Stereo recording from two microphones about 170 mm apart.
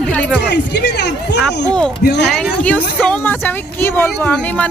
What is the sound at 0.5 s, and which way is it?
Speech, 90° left.